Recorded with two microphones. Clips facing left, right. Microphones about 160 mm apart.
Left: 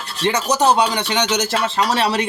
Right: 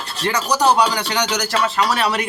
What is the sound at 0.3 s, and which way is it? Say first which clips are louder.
Speech: left 1 dB; 25° left (ahead or behind).